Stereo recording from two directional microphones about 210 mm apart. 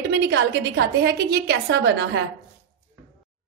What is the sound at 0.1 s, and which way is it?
A woman's voice, 55° right (ahead or behind).